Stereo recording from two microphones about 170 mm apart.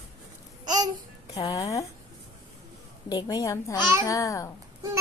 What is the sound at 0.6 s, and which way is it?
Babbling, 25° right (ahead or behind).